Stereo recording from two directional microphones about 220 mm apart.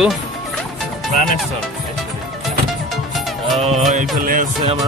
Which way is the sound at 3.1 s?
Centre (ahead or behind).